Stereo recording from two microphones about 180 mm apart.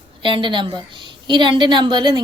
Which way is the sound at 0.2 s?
25° right (ahead or behind).